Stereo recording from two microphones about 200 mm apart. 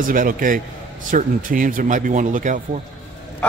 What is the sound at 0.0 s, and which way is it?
A man's voice, 45° right (ahead or behind).